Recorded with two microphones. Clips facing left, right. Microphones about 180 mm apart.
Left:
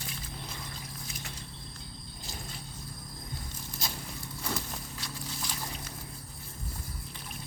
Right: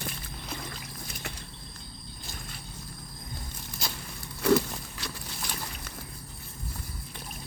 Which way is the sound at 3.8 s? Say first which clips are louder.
Right 1 dB; 70° right (ahead or behind).